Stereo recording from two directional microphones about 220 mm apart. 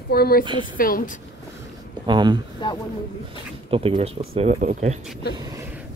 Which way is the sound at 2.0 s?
20° right (ahead or behind).